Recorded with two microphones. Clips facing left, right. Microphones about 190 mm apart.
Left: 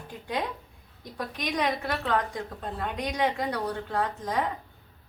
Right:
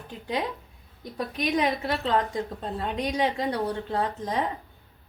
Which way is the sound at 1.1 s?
25° right (ahead or behind).